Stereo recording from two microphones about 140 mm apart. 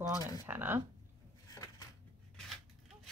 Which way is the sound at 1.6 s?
20° left (ahead or behind).